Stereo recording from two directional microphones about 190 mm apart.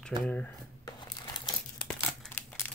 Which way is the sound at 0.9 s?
20° left (ahead or behind).